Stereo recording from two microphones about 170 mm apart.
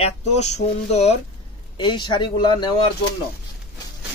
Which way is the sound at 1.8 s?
30° left (ahead or behind).